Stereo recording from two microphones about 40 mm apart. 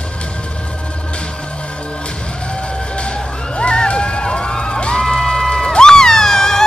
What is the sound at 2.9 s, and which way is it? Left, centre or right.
Crowd, left.